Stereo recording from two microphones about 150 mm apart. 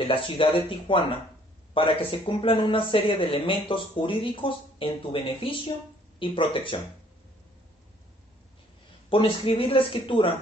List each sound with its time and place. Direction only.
0.0 s speech: 35° left (ahead or behind)
9.1 s speech: 35° left (ahead or behind)